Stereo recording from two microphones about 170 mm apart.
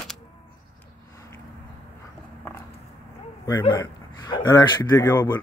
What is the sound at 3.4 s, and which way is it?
A man's voice, 20° left (ahead or behind).